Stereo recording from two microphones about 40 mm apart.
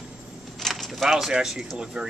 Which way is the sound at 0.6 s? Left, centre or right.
Centre.